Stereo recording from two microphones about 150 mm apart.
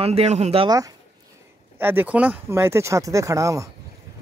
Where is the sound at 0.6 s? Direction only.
25° right (ahead or behind).